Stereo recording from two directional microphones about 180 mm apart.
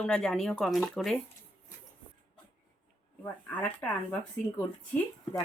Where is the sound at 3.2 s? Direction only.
10° left (ahead or behind).